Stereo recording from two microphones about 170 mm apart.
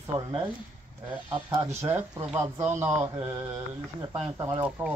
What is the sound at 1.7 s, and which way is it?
Speech, 10° right (ahead or behind).